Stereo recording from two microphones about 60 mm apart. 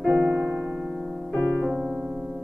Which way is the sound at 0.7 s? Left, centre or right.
Centre.